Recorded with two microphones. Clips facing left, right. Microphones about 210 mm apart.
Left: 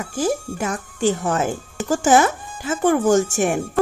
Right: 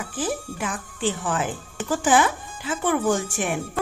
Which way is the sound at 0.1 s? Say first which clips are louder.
Left 7 dB; 45° left (ahead or behind).